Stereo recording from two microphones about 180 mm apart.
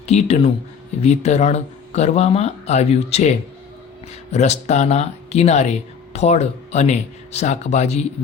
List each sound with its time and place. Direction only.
0.0 s speech: 35° left (ahead or behind)